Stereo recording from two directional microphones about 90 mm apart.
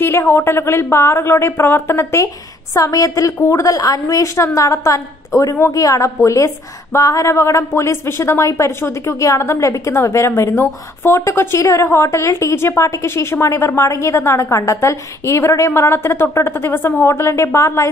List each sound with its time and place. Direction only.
0.0 s a woman's voice: 25° left (ahead or behind)
2.2 s a woman's voice: 40° left (ahead or behind)